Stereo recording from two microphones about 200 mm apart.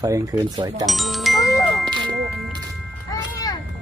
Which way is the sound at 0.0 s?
20° right (ahead or behind).